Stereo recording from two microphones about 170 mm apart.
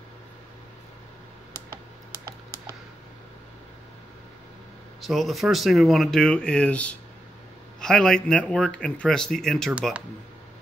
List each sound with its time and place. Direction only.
5.0 s speech: centre (ahead or behind)